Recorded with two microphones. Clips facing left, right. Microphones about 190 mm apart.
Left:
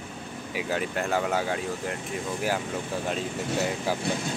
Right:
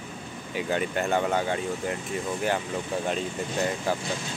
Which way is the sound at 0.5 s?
Centre (ahead or behind).